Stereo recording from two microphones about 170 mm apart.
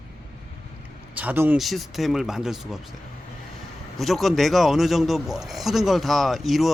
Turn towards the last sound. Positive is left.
turn(degrees=0)  # may be behind; listen again after turning